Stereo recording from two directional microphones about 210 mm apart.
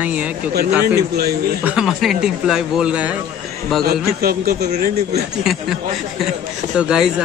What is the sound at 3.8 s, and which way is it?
Speech, 45° right (ahead or behind).